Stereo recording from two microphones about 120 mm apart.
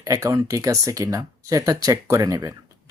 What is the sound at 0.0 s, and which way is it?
Speech, 25° right (ahead or behind).